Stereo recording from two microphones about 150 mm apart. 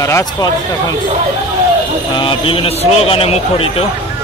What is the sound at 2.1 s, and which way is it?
A man's voice, 35° left (ahead or behind).